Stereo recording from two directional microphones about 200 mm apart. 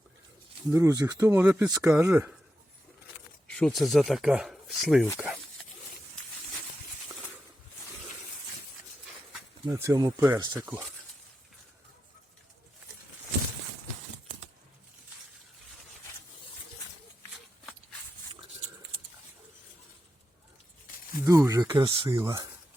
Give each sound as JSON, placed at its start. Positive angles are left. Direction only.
{"t": 0.7, "sound": "speech", "side_deg": -15}
{"t": 3.4, "sound": "speech", "side_deg": 5}
{"t": 9.6, "sound": "speech", "side_deg": -15}
{"t": 21.2, "sound": "a sound", "side_deg": -15}
{"t": 21.8, "sound": "speech", "side_deg": -25}